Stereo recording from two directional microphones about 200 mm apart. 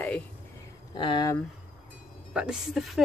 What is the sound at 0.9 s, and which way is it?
Speech, 25° left (ahead or behind).